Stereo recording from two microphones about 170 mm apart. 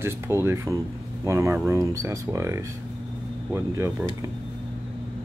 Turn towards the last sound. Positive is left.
turn(degrees=-15)  # may be behind; listen again after turning